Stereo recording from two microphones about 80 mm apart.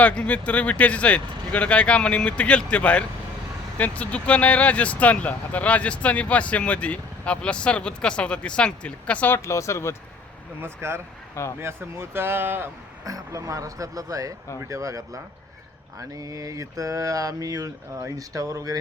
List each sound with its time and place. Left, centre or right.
0.0 s speech: centre
9.3 s speech: left
10.6 s speech: right
13.1 s speech: right